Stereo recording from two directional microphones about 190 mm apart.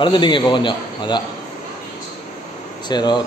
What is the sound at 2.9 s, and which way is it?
Speech, 20° left (ahead or behind).